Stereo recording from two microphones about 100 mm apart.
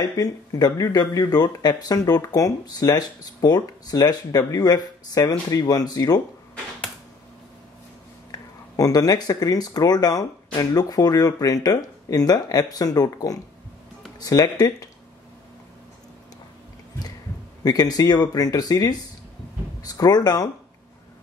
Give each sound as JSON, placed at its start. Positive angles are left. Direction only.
{"t": 0.0, "sound": "speech", "side_deg": 40}
{"t": 8.3, "sound": "speech", "side_deg": 35}
{"t": 17.6, "sound": "speech", "side_deg": 40}